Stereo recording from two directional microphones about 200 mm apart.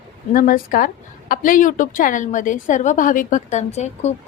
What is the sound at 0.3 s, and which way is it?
A woman's voice, 45° left (ahead or behind).